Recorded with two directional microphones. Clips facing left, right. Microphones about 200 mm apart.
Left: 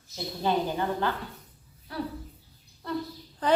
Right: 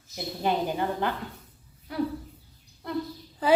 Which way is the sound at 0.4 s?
15° right (ahead or behind).